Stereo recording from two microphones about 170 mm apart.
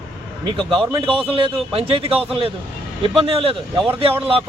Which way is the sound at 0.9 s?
30° right (ahead or behind).